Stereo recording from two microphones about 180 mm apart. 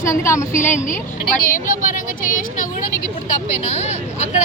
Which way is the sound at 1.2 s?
50° left (ahead or behind).